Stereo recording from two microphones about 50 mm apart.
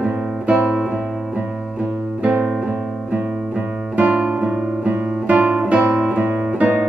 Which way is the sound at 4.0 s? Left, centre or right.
Right.